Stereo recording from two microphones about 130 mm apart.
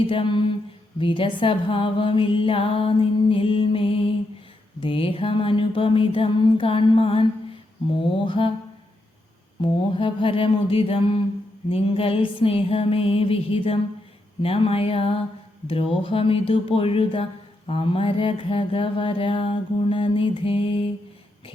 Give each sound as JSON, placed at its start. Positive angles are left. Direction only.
{"t": 0.1, "sound": "a sound", "side_deg": 40}
{"t": 0.9, "sound": "mantra", "side_deg": 40}
{"t": 9.6, "sound": "mantra", "side_deg": 40}